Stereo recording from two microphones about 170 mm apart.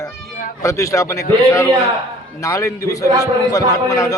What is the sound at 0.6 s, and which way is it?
A man's voice, 20° left (ahead or behind).